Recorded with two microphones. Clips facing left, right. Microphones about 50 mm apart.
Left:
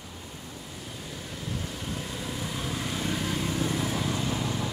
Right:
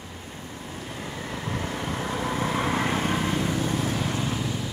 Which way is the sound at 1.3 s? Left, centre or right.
Right.